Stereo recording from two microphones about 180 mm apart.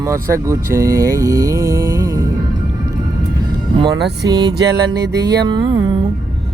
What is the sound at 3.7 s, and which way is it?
Speech, 25° right (ahead or behind).